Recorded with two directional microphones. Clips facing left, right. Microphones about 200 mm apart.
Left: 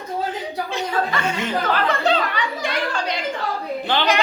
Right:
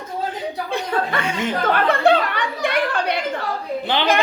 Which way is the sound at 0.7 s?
55° right (ahead or behind).